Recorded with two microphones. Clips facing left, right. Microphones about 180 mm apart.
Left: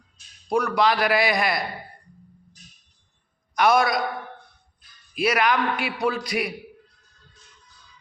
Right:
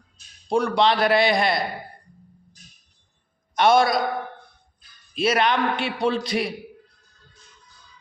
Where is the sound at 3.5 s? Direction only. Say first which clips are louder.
Right 2 dB; 25° right (ahead or behind).